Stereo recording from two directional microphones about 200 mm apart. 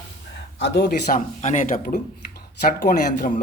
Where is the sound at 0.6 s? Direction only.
60° left (ahead or behind).